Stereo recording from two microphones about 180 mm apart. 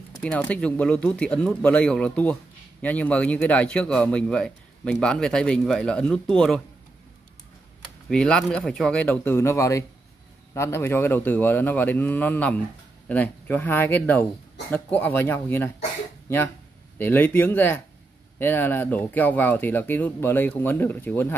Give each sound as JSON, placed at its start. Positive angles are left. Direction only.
{"t": 0.2, "sound": "a man's voice", "side_deg": 5}
{"t": 8.1, "sound": "speech", "side_deg": 5}
{"t": 17.0, "sound": "speech", "side_deg": 10}